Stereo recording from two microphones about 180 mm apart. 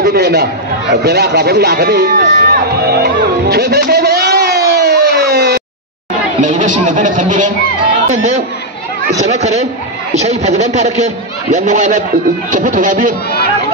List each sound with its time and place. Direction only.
0.0 s speech: 65° right (ahead or behind)
2.2 s music: 55° right (ahead or behind)
6.4 s a man's voice: 45° right (ahead or behind)